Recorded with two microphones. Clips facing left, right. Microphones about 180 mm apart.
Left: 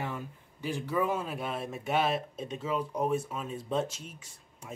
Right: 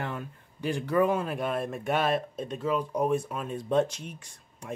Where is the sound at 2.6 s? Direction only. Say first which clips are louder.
Right 4 dB; 5° left (ahead or behind).